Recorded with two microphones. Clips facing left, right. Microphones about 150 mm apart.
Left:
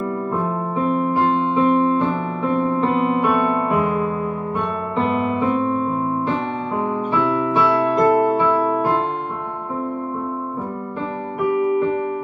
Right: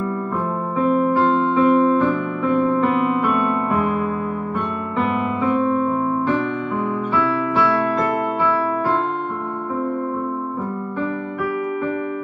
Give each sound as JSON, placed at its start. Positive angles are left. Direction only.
{"t": 1.5, "sound": "music", "side_deg": 20}
{"t": 4.9, "sound": "music", "side_deg": 30}